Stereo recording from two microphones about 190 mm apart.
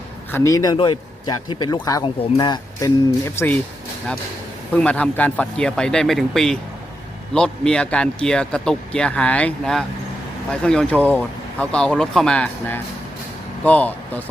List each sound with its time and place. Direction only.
0.3 s a man's voice: 15° left (ahead or behind)
4.7 s a man's voice: 5° left (ahead or behind)